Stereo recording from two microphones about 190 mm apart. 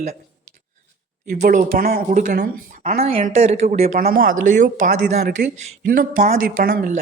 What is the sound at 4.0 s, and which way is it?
Speech, 50° right (ahead or behind).